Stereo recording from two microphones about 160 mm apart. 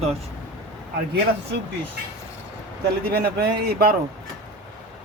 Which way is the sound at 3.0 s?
75° right (ahead or behind).